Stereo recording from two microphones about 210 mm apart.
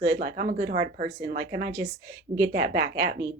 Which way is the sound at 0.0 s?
50° right (ahead or behind).